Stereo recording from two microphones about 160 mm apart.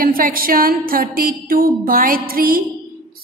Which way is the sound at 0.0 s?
60° right (ahead or behind).